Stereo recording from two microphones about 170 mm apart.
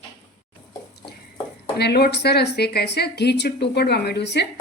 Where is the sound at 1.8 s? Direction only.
70° left (ahead or behind).